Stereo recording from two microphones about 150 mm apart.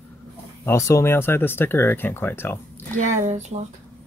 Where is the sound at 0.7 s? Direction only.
20° left (ahead or behind).